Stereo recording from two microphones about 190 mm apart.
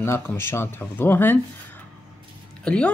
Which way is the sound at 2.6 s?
5° left (ahead or behind).